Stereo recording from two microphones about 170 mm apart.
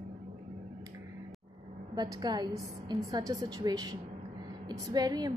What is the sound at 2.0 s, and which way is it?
A woman's voice, 25° right (ahead or behind).